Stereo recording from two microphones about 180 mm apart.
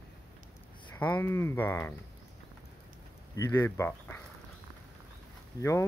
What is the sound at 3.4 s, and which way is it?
Speech, 15° left (ahead or behind).